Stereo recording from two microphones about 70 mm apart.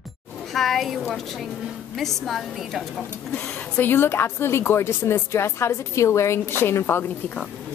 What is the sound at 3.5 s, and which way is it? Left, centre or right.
A woman's voice, left.